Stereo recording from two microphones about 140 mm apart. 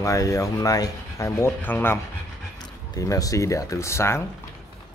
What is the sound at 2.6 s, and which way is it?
Speech, 25° left (ahead or behind).